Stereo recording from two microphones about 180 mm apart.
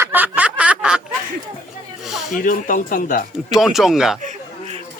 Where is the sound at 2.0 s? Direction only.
Centre (ahead or behind).